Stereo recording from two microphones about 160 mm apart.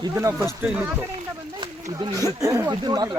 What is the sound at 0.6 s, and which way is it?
Speech, 10° right (ahead or behind).